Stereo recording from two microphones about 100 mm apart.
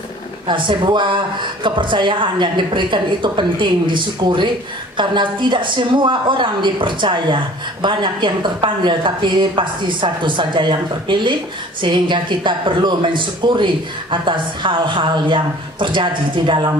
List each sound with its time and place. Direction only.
0.5 s a woman's voice: 50° right (ahead or behind)